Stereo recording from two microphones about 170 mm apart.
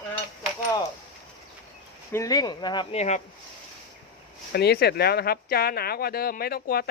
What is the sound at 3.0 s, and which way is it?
Speech, 45° left (ahead or behind).